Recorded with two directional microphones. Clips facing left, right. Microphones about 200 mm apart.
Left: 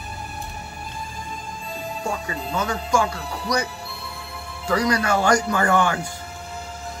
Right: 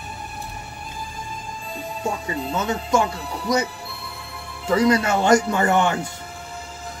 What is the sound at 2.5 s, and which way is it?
Speech, 25° right (ahead or behind).